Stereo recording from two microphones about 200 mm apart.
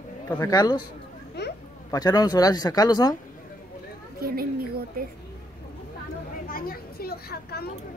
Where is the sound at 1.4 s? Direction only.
55° left (ahead or behind).